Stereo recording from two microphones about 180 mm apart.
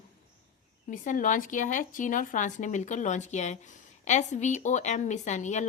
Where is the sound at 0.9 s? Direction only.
45° left (ahead or behind).